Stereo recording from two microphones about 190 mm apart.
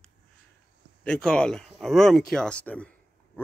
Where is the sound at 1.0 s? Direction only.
5° left (ahead or behind).